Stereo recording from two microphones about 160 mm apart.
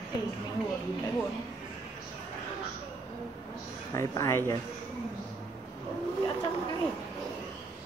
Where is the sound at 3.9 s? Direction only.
20° left (ahead or behind).